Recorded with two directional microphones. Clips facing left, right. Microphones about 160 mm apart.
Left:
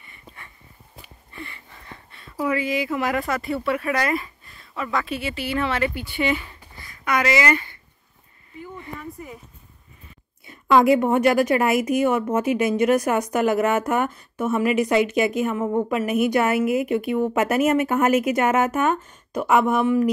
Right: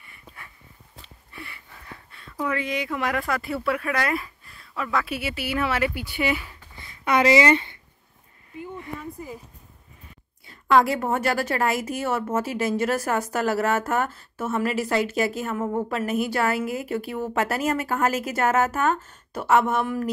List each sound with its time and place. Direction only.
0.0 s a sound: centre (ahead or behind)
1.3 s speech: 10° right (ahead or behind)
6.8 s speech: 30° right (ahead or behind)
10.4 s a woman's voice: 20° left (ahead or behind)